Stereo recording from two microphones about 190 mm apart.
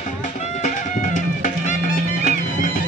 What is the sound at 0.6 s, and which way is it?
Music, 40° left (ahead or behind).